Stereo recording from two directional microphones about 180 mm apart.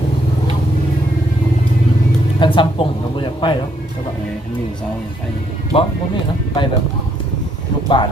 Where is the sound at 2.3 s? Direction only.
25° left (ahead or behind).